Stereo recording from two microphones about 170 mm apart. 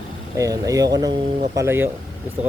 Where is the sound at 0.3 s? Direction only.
20° right (ahead or behind).